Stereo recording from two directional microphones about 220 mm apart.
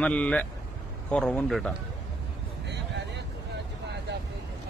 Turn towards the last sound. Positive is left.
turn(degrees=-50)  # may be behind; listen again after turning